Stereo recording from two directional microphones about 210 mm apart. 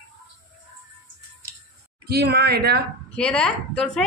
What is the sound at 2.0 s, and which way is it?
Speech, 50° right (ahead or behind).